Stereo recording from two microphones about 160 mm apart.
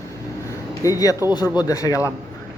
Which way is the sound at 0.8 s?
20° left (ahead or behind).